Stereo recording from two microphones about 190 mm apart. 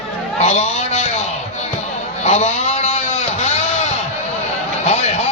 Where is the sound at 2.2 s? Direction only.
35° left (ahead or behind).